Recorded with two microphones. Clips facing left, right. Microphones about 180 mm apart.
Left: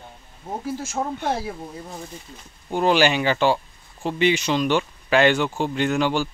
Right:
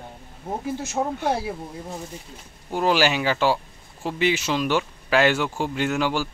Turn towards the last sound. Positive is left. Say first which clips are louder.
# left 2 dB
turn(degrees=-5)  # may be behind; listen again after turning